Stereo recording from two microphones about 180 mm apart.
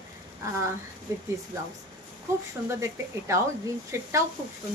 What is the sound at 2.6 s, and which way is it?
Speech, 15° right (ahead or behind).